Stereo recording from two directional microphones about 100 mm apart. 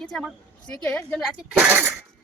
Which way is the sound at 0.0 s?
5° left (ahead or behind).